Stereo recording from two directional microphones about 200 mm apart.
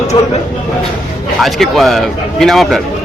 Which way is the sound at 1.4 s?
Centre (ahead or behind).